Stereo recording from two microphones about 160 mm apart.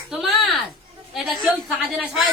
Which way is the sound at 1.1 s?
Centre (ahead or behind).